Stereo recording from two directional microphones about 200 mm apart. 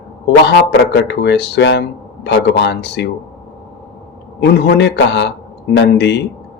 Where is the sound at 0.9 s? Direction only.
60° left (ahead or behind).